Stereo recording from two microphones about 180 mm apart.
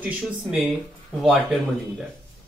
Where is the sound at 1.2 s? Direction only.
Centre (ahead or behind).